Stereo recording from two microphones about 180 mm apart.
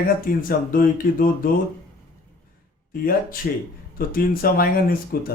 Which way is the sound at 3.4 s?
50° left (ahead or behind).